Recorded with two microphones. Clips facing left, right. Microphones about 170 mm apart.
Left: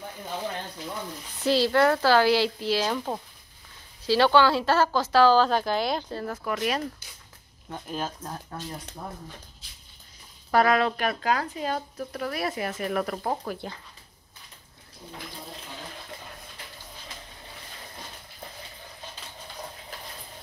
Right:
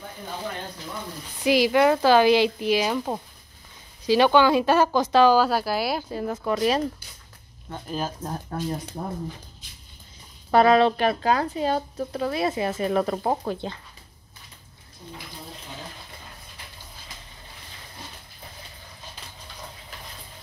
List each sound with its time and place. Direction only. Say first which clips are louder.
1.4 s speech: right 2 dB; 15° right (ahead or behind)
7.9 s speech: right 3 dB; 5° right (ahead or behind)
9.0 s speech: right 6 dB; 40° right (ahead or behind)
10.5 s speech: right 5 dB; 25° right (ahead or behind)